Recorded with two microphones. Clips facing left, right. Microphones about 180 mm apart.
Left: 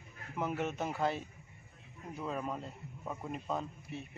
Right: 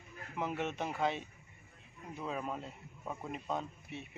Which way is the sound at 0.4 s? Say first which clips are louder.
Left 1 dB; centre (ahead or behind).